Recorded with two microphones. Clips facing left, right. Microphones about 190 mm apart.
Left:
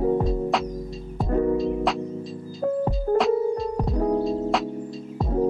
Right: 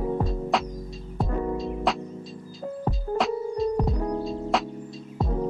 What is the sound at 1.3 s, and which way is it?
Music, 40° left (ahead or behind).